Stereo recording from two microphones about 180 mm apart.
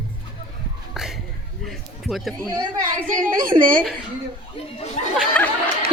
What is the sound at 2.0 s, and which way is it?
Speech, centre (ahead or behind).